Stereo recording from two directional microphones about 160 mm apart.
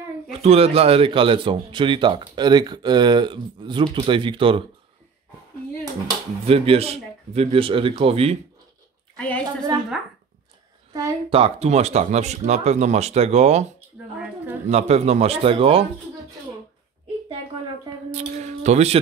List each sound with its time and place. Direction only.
0.4 s a man's voice: 40° right (ahead or behind)
6.4 s a man's voice: 35° right (ahead or behind)
9.1 s a woman's voice: 10° left (ahead or behind)
10.9 s a woman's voice: 20° right (ahead or behind)
11.2 s speech: 35° right (ahead or behind)
14.1 s a sound: 10° right (ahead or behind)
14.7 s a man's voice: 40° right (ahead or behind)
18.1 s speech: 45° right (ahead or behind)